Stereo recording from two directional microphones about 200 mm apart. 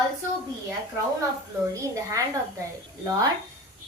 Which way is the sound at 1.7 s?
15° right (ahead or behind).